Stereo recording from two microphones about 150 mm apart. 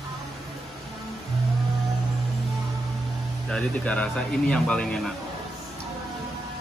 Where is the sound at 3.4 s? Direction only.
5° left (ahead or behind).